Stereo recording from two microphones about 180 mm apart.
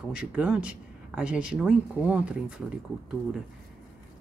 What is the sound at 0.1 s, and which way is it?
Speech, 5° right (ahead or behind).